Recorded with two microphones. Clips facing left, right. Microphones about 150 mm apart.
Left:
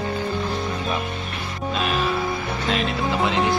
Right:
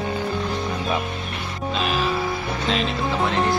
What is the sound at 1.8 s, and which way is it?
Music, centre (ahead or behind).